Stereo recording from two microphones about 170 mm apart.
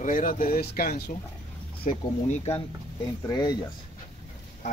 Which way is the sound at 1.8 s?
35° left (ahead or behind).